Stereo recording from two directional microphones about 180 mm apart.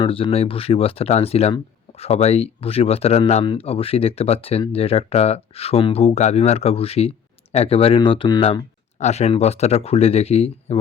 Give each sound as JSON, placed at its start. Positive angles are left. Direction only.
{"t": 0.0, "sound": "speech", "side_deg": 30}